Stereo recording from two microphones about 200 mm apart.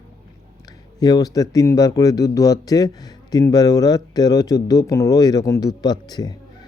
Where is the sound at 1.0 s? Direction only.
20° left (ahead or behind).